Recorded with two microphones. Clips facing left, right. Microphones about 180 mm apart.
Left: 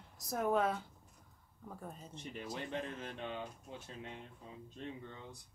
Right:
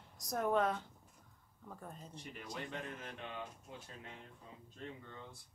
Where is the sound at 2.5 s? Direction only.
30° left (ahead or behind).